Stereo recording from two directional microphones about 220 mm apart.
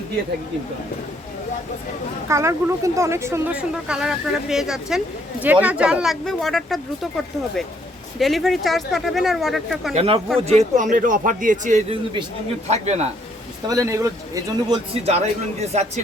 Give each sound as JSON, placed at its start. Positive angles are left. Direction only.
{"t": 2.2, "sound": "speech", "side_deg": -15}
{"t": 8.2, "sound": "speech", "side_deg": 0}
{"t": 9.9, "sound": "a man's voice", "side_deg": -30}
{"t": 13.7, "sound": "speech", "side_deg": -15}
{"t": 15.0, "sound": "a man's voice", "side_deg": -30}